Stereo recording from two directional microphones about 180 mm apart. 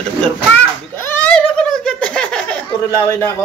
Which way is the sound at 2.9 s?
15° left (ahead or behind).